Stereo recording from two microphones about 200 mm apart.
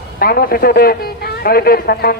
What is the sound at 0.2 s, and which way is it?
A man's voice, 50° left (ahead or behind).